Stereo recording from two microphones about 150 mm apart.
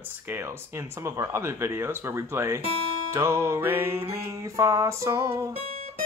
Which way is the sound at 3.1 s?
20° right (ahead or behind).